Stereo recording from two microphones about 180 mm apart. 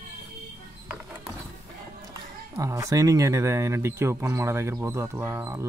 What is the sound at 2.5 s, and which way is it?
Speech, 15° right (ahead or behind).